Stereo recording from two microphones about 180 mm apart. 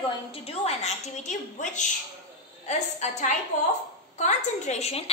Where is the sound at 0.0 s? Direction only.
35° left (ahead or behind).